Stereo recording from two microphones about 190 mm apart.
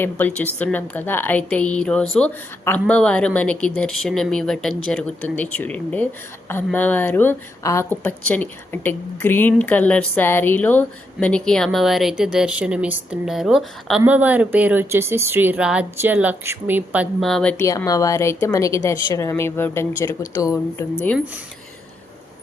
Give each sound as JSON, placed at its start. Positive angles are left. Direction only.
{"t": 0.0, "sound": "a woman's voice", "side_deg": 10}
{"t": 17.6, "sound": "a woman's voice", "side_deg": 15}